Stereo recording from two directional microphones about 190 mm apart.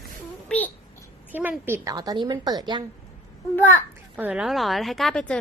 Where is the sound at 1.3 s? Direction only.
10° right (ahead or behind).